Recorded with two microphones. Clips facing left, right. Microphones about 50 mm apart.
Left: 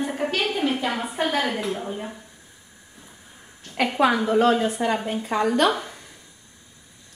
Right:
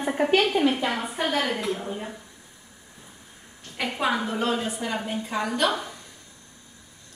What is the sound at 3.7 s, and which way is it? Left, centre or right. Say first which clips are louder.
Speech: left 6 dB; left.